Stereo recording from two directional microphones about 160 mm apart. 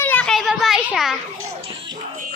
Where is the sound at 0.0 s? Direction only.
10° left (ahead or behind).